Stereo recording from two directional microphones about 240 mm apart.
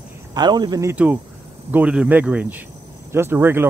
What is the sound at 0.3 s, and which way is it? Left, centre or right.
Speech, centre.